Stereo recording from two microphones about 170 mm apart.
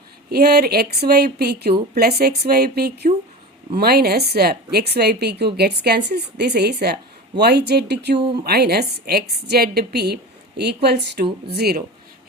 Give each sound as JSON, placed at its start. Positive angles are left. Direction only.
{"t": 0.3, "sound": "speech", "side_deg": -65}